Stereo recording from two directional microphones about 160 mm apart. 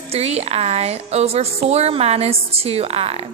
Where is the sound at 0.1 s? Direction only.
40° right (ahead or behind).